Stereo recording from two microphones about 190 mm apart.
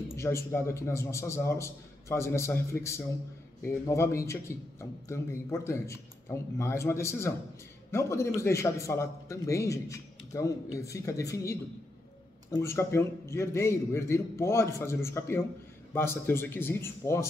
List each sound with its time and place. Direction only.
0.1 s a man's voice: 15° left (ahead or behind)